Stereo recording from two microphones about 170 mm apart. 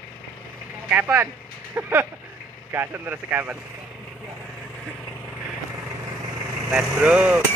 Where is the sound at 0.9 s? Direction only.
10° right (ahead or behind).